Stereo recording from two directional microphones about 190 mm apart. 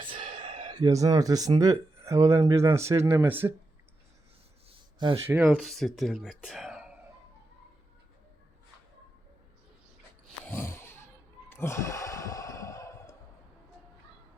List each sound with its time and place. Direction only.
0.3 s speech: 25° right (ahead or behind)
4.9 s speech: 25° right (ahead or behind)
5.2 s speech: 10° right (ahead or behind)
10.4 s a sound: 10° left (ahead or behind)
11.4 s sigh: 15° left (ahead or behind)